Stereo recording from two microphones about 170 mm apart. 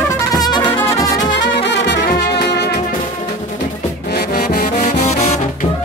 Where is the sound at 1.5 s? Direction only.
90° left; by 2.8 s 75° left (ahead or behind).